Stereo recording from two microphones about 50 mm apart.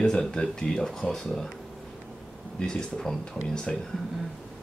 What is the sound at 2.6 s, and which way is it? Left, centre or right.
Speech, centre.